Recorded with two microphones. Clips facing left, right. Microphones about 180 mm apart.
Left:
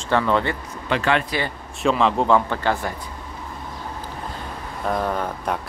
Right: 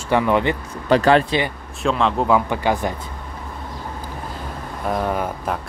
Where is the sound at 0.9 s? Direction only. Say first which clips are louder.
Right 7 dB; 35° right (ahead or behind).